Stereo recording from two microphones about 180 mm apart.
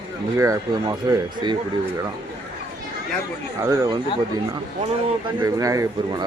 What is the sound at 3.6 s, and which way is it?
Speech, 20° right (ahead or behind).